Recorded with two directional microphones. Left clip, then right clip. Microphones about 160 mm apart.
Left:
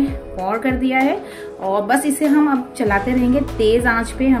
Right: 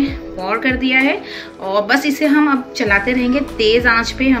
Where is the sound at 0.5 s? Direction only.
35° left (ahead or behind).